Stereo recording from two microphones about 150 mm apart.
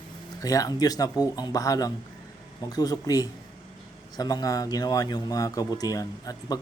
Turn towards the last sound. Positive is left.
turn(degrees=25)  # may be behind; listen again after turning